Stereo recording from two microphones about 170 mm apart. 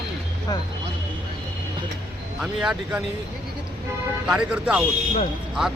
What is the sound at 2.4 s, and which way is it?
Speech, 5° right (ahead or behind).